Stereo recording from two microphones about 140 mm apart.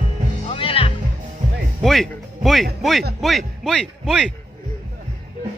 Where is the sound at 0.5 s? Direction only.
40° left (ahead or behind).